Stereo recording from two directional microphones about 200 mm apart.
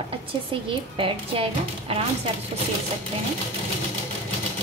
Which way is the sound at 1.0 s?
30° right (ahead or behind).